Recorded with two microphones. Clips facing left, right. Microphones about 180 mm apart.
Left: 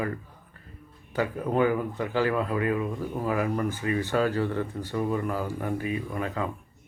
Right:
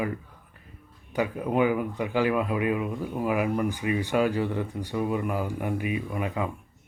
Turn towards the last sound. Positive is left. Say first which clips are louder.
# right 1 dB
turn(degrees=-15)  # may be behind; listen again after turning